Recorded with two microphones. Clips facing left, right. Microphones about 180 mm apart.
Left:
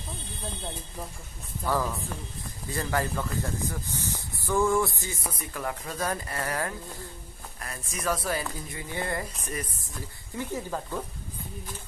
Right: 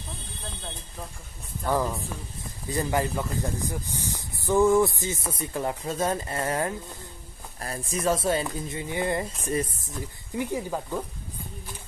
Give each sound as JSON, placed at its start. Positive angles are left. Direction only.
{"t": 2.7, "sound": "speech", "side_deg": -20}
{"t": 10.3, "sound": "speech", "side_deg": -15}